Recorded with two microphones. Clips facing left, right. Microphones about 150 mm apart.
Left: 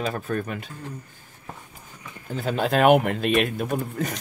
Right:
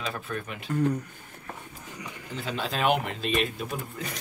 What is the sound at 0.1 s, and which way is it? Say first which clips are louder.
Speech: left 7 dB; 45° left (ahead or behind).